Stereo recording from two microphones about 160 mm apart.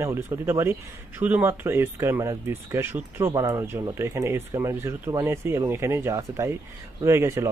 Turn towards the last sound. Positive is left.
turn(degrees=-15)  # may be behind; listen again after turning